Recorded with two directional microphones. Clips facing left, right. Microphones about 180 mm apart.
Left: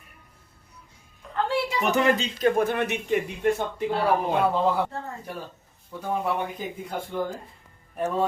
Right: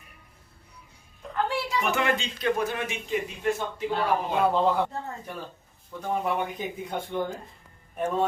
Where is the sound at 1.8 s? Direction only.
35° left (ahead or behind); by 3.8 s 60° left (ahead or behind).